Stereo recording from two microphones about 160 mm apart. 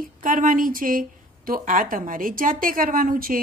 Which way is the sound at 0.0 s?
60° right (ahead or behind).